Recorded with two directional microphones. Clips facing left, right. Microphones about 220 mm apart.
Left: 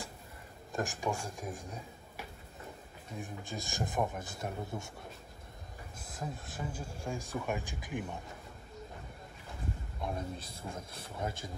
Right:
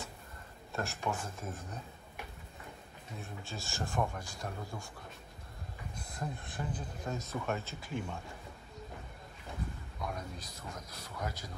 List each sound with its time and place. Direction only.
0.7 s speech: 15° left (ahead or behind)
3.2 s speech: 15° left (ahead or behind)
5.9 s speech: 5° left (ahead or behind)
9.9 s speech: 25° left (ahead or behind)